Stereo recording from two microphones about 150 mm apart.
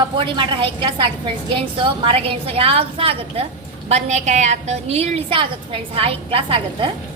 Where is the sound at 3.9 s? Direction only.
50° right (ahead or behind).